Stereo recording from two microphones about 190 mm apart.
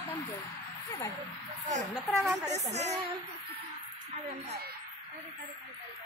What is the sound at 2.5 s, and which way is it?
Speech, 35° right (ahead or behind).